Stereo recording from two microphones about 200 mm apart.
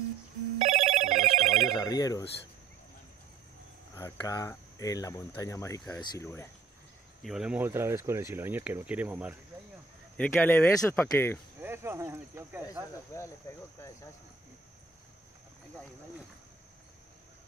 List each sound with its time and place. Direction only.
0.6 s telephone bell ringing: 35° right (ahead or behind)
1.5 s telephone bell ringing: centre (ahead or behind)
1.8 s speech: 20° left (ahead or behind)
3.9 s speech: 15° left (ahead or behind)
7.2 s speech: 5° right (ahead or behind)
10.1 s speech: 10° left (ahead or behind)
11.6 s speech: 10° right (ahead or behind)
13.5 s speech: 15° left (ahead or behind)